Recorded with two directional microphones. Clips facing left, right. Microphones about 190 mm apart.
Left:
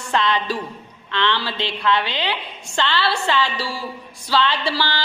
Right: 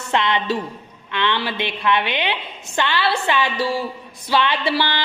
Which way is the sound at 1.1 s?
15° right (ahead or behind).